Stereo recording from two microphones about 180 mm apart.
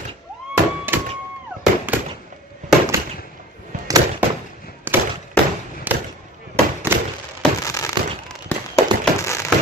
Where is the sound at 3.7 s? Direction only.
45° right (ahead or behind).